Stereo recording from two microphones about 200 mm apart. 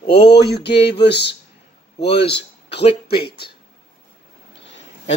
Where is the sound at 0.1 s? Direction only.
55° left (ahead or behind).